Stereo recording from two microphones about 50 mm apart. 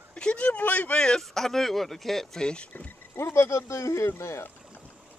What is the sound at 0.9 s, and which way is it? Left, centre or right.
Speech, centre.